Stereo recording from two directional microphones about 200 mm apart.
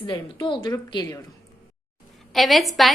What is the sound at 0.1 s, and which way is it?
Speech, 25° left (ahead or behind).